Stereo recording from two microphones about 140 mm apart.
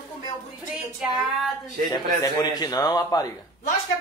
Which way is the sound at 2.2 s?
25° left (ahead or behind).